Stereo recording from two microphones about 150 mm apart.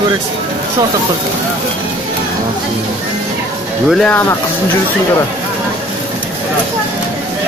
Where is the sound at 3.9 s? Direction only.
10° left (ahead or behind).